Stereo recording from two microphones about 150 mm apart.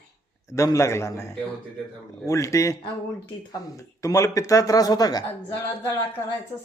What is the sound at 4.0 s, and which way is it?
A man's voice, 20° left (ahead or behind).